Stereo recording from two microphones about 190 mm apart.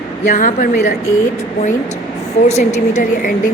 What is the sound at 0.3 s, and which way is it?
Speech, 45° left (ahead or behind).